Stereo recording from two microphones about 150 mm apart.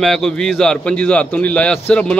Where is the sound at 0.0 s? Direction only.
5° left (ahead or behind).